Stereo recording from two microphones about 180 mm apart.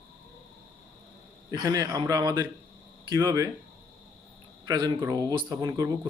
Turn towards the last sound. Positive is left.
turn(degrees=-20)  # may be behind; listen again after turning